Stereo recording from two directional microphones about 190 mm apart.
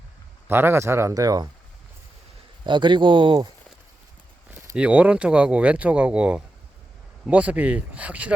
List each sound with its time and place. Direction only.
0.4 s speech: 10° right (ahead or behind)
2.6 s speech: 25° right (ahead or behind)
4.7 s speech: 5° right (ahead or behind)